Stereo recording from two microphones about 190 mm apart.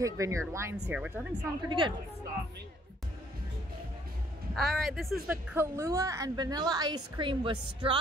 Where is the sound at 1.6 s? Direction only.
25° right (ahead or behind).